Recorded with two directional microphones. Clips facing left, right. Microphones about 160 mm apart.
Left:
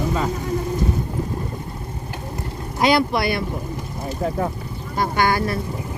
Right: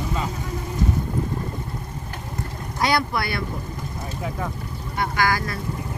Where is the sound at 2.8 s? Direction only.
20° left (ahead or behind).